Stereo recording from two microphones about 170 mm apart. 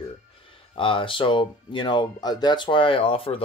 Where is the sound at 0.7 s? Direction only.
30° left (ahead or behind).